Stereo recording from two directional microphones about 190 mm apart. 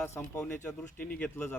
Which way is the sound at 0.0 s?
10° left (ahead or behind).